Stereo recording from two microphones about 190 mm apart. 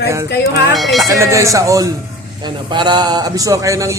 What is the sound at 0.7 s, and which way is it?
Speech, centre (ahead or behind).